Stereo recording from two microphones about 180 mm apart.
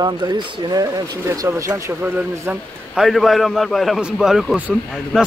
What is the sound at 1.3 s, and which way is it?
Speech, 20° right (ahead or behind).